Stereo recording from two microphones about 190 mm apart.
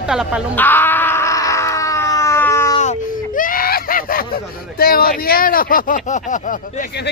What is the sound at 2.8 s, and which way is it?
Speech, 45° left (ahead or behind).